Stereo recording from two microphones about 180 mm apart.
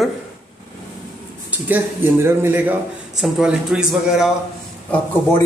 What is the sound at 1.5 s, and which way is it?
Speech, 10° right (ahead or behind).